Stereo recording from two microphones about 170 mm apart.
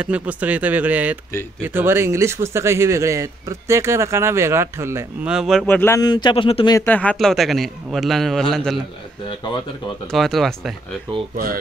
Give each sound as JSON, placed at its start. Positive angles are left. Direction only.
{"t": 0.0, "sound": "speech", "side_deg": -10}
{"t": 5.3, "sound": "a man's voice", "side_deg": 0}
{"t": 6.8, "sound": "a man's voice", "side_deg": 10}
{"t": 10.1, "sound": "a man's voice", "side_deg": 0}